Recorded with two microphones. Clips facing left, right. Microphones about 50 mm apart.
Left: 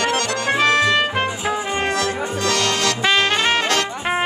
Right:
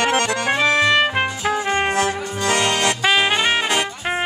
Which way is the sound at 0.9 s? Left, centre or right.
Centre.